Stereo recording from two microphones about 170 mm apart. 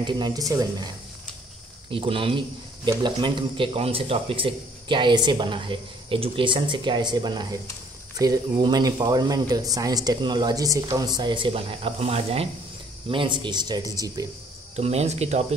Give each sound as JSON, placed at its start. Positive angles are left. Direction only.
{"t": 0.0, "sound": "a man's voice", "side_deg": -20}
{"t": 14.8, "sound": "speech", "side_deg": -40}